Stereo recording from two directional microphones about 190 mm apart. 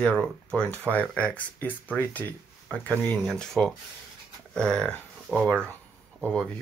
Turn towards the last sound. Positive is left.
turn(degrees=5)  # may be behind; listen again after turning